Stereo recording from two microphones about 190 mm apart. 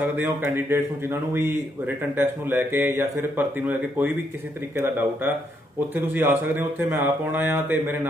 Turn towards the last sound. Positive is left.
turn(degrees=-10)  # may be behind; listen again after turning